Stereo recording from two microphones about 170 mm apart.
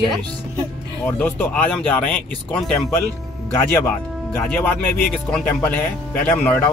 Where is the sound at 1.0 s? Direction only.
10° left (ahead or behind).